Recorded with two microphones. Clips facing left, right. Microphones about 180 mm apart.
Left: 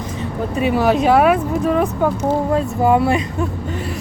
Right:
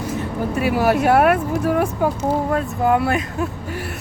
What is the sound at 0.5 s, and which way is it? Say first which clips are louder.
Speech: left 2 dB; 5° right (ahead or behind).